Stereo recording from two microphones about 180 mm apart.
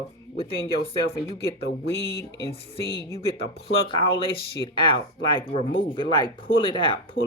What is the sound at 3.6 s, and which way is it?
Speech, 30° left (ahead or behind).